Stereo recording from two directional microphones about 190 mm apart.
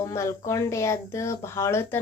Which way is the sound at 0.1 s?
15° left (ahead or behind).